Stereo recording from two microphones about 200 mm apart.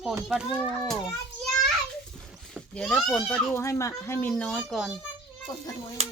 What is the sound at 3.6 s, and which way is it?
A child's voice, 15° left (ahead or behind).